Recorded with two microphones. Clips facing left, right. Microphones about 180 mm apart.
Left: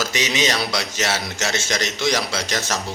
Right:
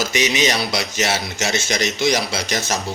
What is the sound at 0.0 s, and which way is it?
A man's voice, 15° right (ahead or behind).